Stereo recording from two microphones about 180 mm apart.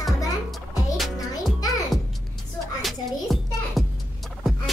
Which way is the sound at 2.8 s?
Centre (ahead or behind).